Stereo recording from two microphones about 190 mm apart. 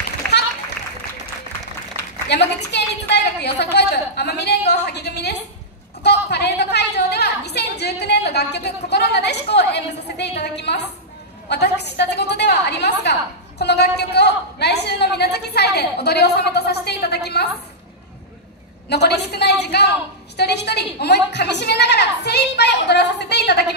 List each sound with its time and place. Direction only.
0.2 s a sound: 5° left (ahead or behind)
2.2 s a woman's voice: 60° left (ahead or behind)
18.9 s a woman's voice: 60° left (ahead or behind)